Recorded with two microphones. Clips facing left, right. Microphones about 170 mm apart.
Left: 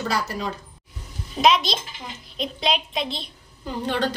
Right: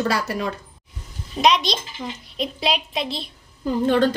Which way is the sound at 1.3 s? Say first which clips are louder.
Even; centre (ahead or behind).